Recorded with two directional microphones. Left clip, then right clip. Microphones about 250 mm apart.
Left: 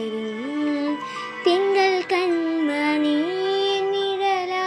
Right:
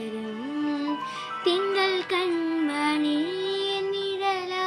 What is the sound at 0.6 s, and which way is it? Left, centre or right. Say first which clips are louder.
Music: left 4 dB; centre.